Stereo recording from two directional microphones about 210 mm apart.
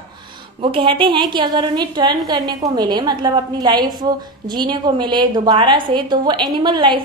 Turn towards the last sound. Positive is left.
turn(degrees=-20)  # may be behind; listen again after turning